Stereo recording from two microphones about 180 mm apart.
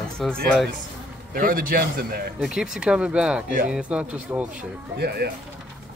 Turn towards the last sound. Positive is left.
turn(degrees=-60)  # may be behind; listen again after turning